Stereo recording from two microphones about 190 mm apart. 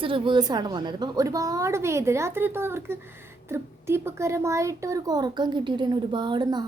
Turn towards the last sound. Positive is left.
turn(degrees=-20)  # may be behind; listen again after turning